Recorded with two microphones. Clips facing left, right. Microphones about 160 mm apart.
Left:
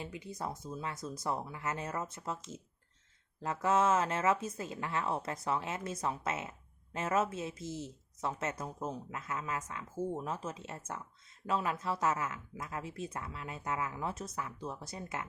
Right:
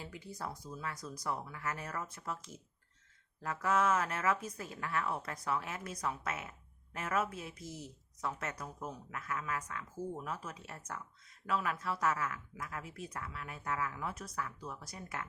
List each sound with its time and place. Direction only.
0.0 s speech: 20° left (ahead or behind)